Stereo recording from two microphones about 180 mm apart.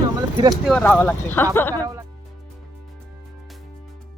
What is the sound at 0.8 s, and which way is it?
Speech, 10° left (ahead or behind).